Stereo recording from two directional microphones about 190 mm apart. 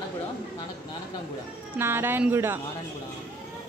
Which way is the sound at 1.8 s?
10° right (ahead or behind).